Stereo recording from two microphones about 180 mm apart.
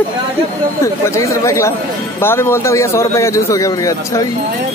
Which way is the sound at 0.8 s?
15° left (ahead or behind).